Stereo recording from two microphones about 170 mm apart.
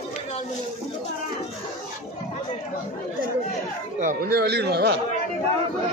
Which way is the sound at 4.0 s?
55° right (ahead or behind).